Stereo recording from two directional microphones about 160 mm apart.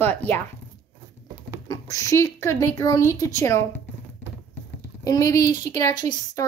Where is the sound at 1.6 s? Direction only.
20° left (ahead or behind).